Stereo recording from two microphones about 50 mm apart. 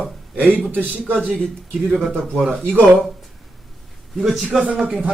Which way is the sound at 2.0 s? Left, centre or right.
Centre.